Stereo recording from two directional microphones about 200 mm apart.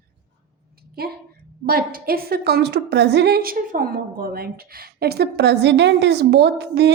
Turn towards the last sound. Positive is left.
turn(degrees=-55)  # may be behind; listen again after turning